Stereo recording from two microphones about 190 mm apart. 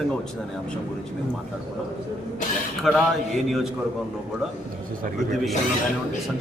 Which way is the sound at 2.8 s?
Centre (ahead or behind).